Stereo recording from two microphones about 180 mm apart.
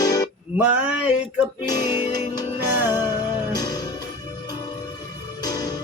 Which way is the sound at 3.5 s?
20° left (ahead or behind).